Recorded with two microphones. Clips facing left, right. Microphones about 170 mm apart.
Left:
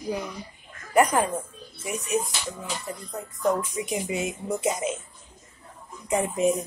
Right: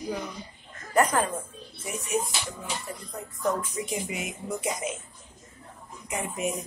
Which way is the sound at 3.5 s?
15° left (ahead or behind).